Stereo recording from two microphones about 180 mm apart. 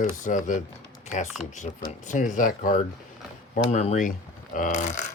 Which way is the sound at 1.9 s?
45° left (ahead or behind).